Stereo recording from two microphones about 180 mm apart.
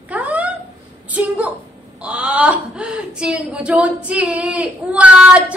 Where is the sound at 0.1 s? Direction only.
10° right (ahead or behind).